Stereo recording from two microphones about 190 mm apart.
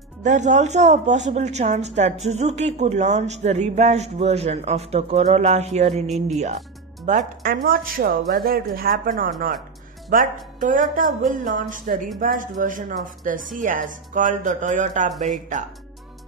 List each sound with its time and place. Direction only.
0.2 s a man's voice: 40° right (ahead or behind)
7.1 s a woman's voice: 45° right (ahead or behind)